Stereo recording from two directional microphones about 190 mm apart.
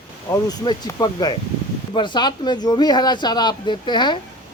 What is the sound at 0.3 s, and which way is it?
Speech, 20° left (ahead or behind).